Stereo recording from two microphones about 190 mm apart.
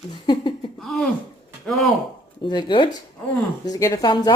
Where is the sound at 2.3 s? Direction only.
25° left (ahead or behind).